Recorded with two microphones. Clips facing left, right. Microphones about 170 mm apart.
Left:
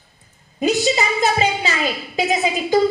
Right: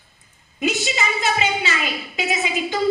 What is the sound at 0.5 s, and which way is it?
A woman's voice, 35° left (ahead or behind).